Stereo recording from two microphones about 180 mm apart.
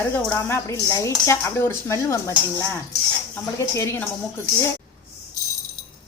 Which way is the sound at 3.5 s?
15° left (ahead or behind).